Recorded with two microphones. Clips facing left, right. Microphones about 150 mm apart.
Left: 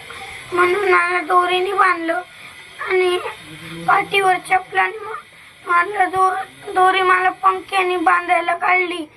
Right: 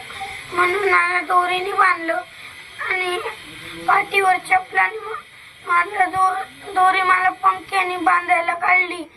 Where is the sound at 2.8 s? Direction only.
20° left (ahead or behind).